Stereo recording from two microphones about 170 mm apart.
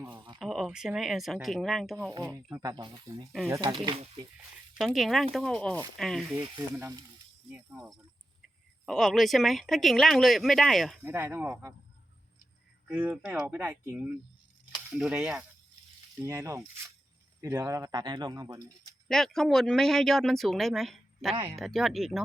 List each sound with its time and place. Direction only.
0.3 s speech: centre (ahead or behind)
2.1 s speech: 20° right (ahead or behind); by 4.3 s 35° right (ahead or behind)
4.7 s speech: centre (ahead or behind)
7.5 s speech: 5° right (ahead or behind)
11.0 s speech: 15° right (ahead or behind)
12.9 s speech: 10° right (ahead or behind)
16.2 s speech: 15° right (ahead or behind)
18.8 s speech: 5° left (ahead or behind)